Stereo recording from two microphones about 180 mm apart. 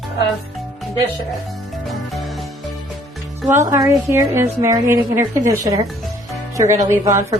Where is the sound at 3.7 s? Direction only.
15° right (ahead or behind).